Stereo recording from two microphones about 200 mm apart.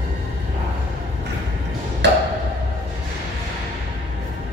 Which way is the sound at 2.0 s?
60° right (ahead or behind).